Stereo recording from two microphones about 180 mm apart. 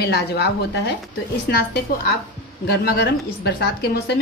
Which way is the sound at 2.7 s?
60° left (ahead or behind).